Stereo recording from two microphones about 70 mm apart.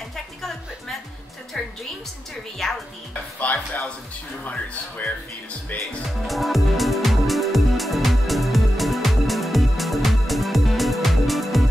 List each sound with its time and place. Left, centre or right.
0.1 s music: centre
2.6 s speech: centre
3.3 s speech: left
6.2 s music: centre